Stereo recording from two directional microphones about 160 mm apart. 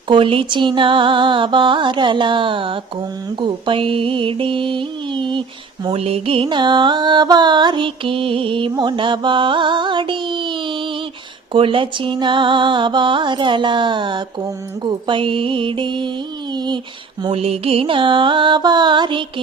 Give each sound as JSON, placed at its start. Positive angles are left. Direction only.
{"t": 0.1, "sound": "music", "side_deg": -30}
{"t": 17.2, "sound": "music", "side_deg": -40}